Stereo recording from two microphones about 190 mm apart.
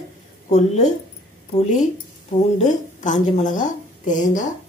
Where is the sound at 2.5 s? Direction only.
40° left (ahead or behind).